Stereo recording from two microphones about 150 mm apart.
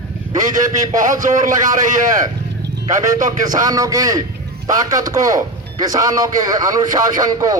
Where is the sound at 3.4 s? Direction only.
25° right (ahead or behind).